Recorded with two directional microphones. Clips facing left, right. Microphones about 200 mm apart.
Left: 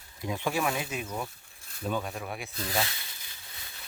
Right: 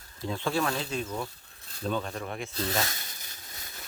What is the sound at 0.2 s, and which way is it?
Speech, 15° left (ahead or behind).